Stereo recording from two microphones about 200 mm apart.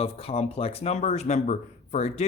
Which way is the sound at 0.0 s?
30° left (ahead or behind).